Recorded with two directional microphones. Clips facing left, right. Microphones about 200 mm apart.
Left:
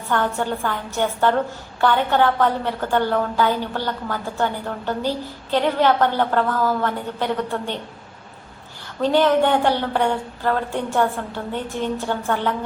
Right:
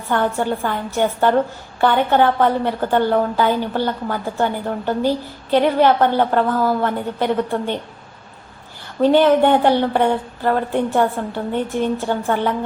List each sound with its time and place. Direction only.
0.1 s a woman's voice: 15° right (ahead or behind)
9.0 s a woman's voice: 15° right (ahead or behind)